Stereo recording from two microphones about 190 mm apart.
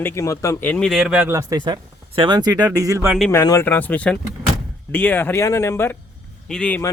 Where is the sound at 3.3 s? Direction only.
15° left (ahead or behind).